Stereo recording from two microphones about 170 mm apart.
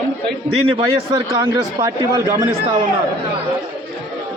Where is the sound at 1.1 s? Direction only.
20° right (ahead or behind).